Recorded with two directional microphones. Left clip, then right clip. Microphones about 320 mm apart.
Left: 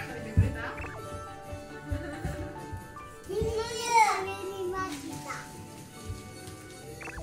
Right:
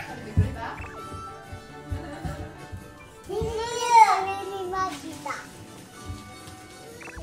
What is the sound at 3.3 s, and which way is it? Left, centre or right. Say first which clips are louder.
Child singing: right 3 dB; centre.